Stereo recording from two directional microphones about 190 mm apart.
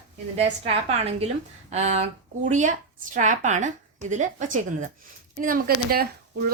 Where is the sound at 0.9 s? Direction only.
30° right (ahead or behind).